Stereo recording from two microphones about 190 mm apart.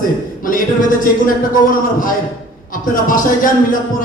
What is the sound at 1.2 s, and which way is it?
A man's voice, 45° left (ahead or behind).